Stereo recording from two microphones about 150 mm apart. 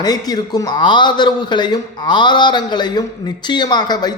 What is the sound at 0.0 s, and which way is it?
Speech, 25° left (ahead or behind).